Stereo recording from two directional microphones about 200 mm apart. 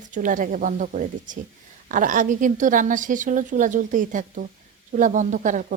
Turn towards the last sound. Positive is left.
turn(degrees=-40)  # may be behind; listen again after turning